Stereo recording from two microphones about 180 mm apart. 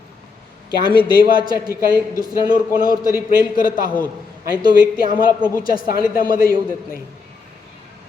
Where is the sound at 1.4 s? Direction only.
20° right (ahead or behind).